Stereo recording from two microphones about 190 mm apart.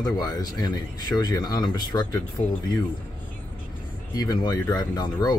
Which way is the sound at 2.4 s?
35° left (ahead or behind).